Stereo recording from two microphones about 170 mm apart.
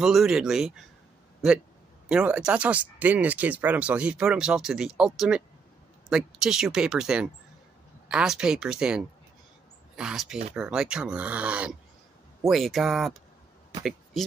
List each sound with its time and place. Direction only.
0.0 s speech: centre (ahead or behind)
2.0 s speech: 5° right (ahead or behind)